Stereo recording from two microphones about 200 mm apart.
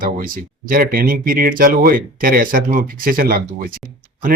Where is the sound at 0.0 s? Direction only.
45° right (ahead or behind).